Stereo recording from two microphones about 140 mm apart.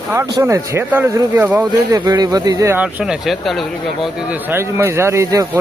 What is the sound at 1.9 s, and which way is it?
A man's voice, 25° right (ahead or behind).